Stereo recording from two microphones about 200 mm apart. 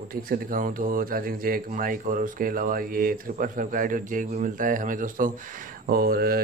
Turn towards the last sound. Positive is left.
turn(degrees=-50)  # may be behind; listen again after turning